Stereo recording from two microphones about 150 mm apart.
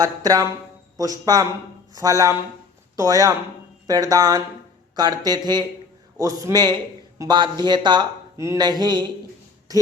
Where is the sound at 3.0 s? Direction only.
20° right (ahead or behind).